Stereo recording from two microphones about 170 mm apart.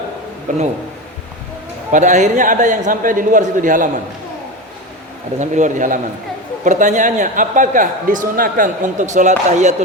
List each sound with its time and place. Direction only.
0.5 s a man's voice: 50° right (ahead or behind)
1.9 s a man's voice: 45° right (ahead or behind)
5.4 s a man's voice: 45° right (ahead or behind)